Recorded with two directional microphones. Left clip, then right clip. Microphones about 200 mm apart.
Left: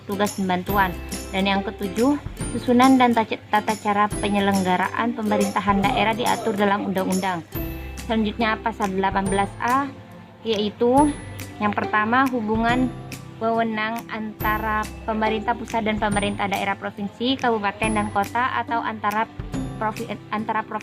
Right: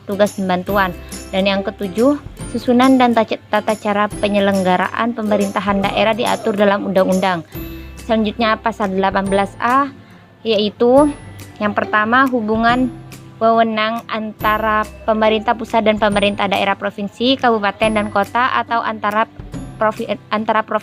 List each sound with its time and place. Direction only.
0.2 s speech: 30° right (ahead or behind)
1.8 s speech: centre (ahead or behind)
2.6 s speech: 30° right (ahead or behind)